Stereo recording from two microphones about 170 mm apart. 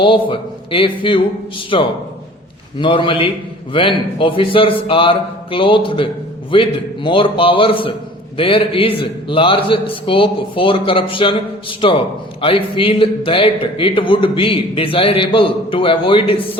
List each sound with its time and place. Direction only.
0.0 s a man's voice: 30° left (ahead or behind)